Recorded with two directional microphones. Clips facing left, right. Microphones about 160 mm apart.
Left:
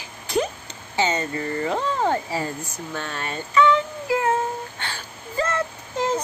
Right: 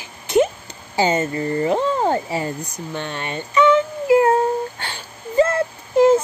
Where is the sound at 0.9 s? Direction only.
30° right (ahead or behind).